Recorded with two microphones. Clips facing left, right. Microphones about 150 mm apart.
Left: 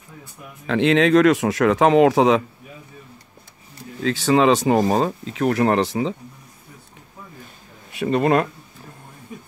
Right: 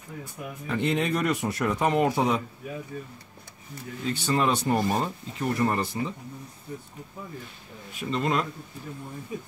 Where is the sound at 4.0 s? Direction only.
90° left.